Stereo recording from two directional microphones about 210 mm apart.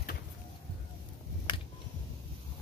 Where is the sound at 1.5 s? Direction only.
20° left (ahead or behind).